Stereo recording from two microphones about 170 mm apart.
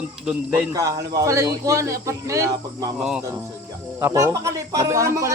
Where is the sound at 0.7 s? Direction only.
20° right (ahead or behind).